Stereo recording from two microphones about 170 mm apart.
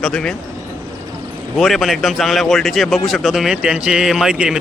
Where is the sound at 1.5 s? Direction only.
Centre (ahead or behind).